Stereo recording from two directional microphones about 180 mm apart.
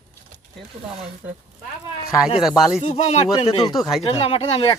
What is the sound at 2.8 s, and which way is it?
Speech, 35° left (ahead or behind).